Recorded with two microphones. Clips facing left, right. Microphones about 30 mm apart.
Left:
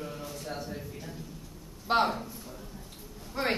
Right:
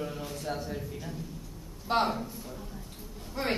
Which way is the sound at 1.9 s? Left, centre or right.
Centre.